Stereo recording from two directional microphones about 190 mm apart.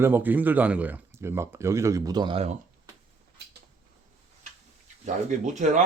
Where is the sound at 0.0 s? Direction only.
10° right (ahead or behind); by 2.6 s 30° right (ahead or behind).